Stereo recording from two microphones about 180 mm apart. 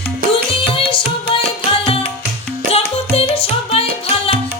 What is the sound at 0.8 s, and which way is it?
Music, 30° left (ahead or behind).